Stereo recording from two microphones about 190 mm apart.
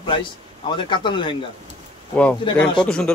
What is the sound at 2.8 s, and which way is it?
Speech, 5° left (ahead or behind).